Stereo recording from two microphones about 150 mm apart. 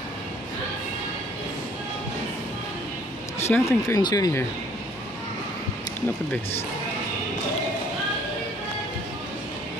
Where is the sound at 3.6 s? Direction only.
20° left (ahead or behind).